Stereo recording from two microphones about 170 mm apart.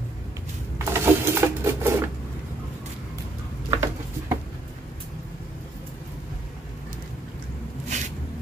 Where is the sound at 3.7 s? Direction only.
15° right (ahead or behind).